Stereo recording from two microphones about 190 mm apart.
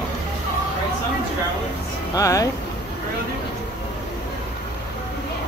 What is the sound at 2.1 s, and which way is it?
Speech, 15° left (ahead or behind).